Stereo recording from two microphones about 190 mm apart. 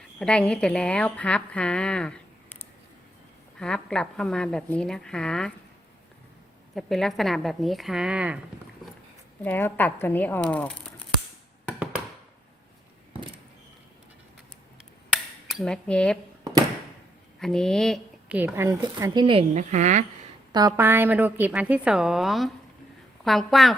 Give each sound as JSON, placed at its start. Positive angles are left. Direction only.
{"t": 0.2, "sound": "a woman's voice", "side_deg": 5}
{"t": 3.6, "sound": "a woman's voice", "side_deg": 5}
{"t": 6.7, "sound": "a woman's voice", "side_deg": 0}
{"t": 9.4, "sound": "speech", "side_deg": 10}
{"t": 15.1, "sound": "cutlery", "side_deg": 0}
{"t": 17.4, "sound": "a woman's voice", "side_deg": 5}
{"t": 18.3, "sound": "speech", "side_deg": -10}
{"t": 20.5, "sound": "a woman's voice", "side_deg": -20}